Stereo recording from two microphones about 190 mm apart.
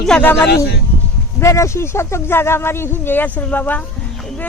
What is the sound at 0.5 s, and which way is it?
Speech, 60° left (ahead or behind).